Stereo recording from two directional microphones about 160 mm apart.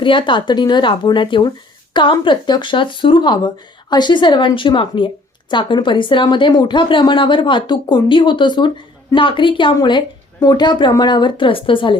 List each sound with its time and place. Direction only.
0.0 s a woman's voice: 30° left (ahead or behind)